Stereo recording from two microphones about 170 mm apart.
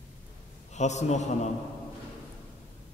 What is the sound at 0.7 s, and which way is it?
Speech, 40° left (ahead or behind).